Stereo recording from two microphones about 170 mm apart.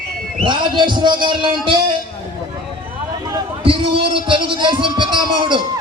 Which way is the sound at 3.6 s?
30° right (ahead or behind).